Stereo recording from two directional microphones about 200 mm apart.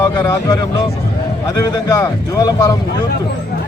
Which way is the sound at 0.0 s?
15° left (ahead or behind).